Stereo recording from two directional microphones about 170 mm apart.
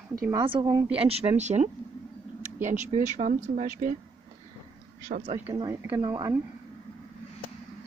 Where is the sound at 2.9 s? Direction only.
45° right (ahead or behind).